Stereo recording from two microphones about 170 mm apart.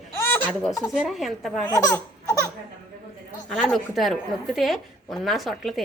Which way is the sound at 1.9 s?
15° left (ahead or behind).